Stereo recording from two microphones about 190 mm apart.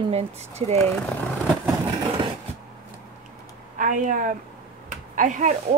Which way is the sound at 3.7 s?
45° right (ahead or behind).